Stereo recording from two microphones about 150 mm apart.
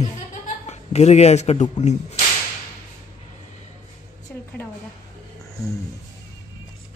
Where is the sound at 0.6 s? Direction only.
45° left (ahead or behind).